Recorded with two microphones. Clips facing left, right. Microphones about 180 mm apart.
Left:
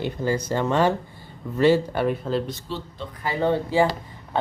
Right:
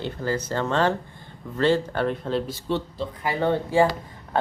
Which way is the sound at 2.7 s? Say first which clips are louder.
Right 9 dB; 55° right (ahead or behind).